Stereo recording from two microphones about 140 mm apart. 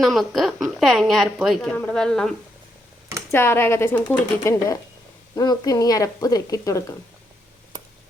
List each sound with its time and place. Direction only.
0.0 s a woman's voice: centre (ahead or behind)
1.7 s a woman's voice: 10° left (ahead or behind)
3.3 s speech: 15° left (ahead or behind)
5.3 s speech: 25° left (ahead or behind)